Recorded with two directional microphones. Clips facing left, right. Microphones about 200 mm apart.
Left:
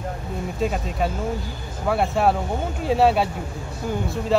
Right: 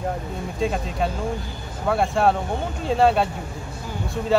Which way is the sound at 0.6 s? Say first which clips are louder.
Even; 5° left (ahead or behind).